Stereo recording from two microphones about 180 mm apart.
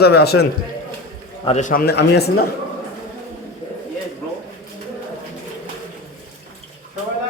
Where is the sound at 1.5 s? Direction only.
40° left (ahead or behind); by 2.5 s 65° left (ahead or behind).